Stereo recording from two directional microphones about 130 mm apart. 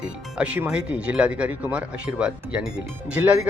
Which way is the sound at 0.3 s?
10° right (ahead or behind).